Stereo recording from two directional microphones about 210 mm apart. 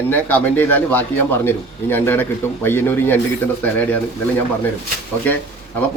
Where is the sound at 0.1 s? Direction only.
10° left (ahead or behind).